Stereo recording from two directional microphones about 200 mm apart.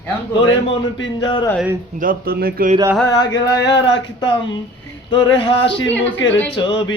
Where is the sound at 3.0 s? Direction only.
20° left (ahead or behind).